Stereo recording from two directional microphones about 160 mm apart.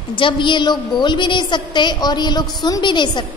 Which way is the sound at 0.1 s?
30° left (ahead or behind).